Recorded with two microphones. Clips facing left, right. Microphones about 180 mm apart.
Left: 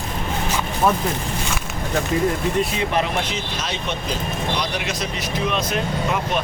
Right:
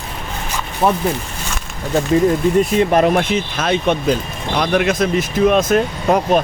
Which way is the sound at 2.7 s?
50° right (ahead or behind).